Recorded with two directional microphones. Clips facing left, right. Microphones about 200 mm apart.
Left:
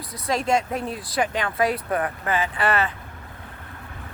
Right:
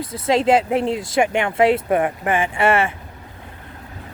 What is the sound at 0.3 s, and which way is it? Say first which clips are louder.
Speech: right 6 dB; 30° right (ahead or behind).